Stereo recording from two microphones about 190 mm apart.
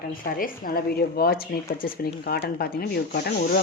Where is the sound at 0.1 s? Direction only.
50° left (ahead or behind).